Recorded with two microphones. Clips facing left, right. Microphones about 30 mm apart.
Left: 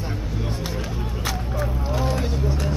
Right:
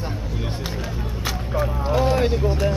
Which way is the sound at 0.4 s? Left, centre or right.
Centre.